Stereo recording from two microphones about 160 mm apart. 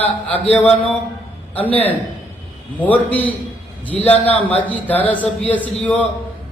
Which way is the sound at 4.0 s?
40° left (ahead or behind).